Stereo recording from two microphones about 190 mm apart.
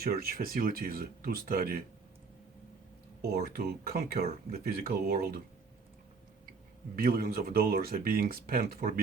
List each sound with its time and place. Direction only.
0.0 s speech: 55° right (ahead or behind)
3.2 s speech: 55° right (ahead or behind)
6.9 s speech: 50° right (ahead or behind)